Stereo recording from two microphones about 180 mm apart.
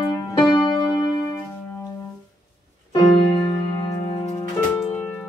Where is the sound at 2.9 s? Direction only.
25° left (ahead or behind).